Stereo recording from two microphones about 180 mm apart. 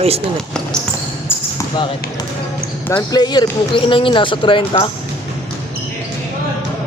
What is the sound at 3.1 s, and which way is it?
Speech, 20° left (ahead or behind).